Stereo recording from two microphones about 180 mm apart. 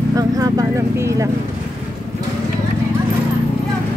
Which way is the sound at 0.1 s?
20° right (ahead or behind).